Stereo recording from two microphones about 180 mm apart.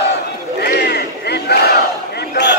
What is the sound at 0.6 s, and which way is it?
Battle cry, 65° left (ahead or behind).